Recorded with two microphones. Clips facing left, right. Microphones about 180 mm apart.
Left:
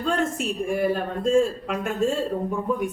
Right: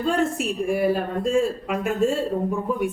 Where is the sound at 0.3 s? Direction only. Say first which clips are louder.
Right 2 dB; 5° right (ahead or behind).